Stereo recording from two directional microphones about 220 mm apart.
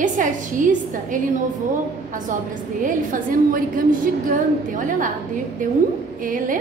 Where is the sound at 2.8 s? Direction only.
40° right (ahead or behind).